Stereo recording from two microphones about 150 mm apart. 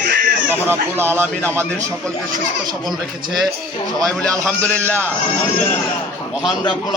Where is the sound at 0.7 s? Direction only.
15° right (ahead or behind).